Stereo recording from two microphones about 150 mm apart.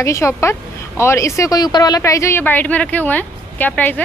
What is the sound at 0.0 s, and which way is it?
Speech, 20° left (ahead or behind).